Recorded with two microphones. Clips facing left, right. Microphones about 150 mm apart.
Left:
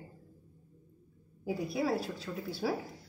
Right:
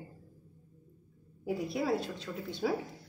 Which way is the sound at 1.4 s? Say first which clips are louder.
Even; centre (ahead or behind).